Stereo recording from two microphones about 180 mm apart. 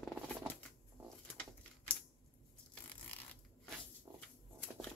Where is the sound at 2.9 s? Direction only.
5° left (ahead or behind).